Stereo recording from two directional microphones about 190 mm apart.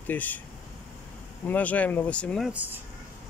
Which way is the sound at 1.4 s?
10° left (ahead or behind).